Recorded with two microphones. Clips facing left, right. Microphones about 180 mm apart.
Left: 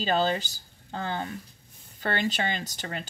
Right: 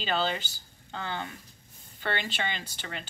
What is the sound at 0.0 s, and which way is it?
Speech, 40° left (ahead or behind).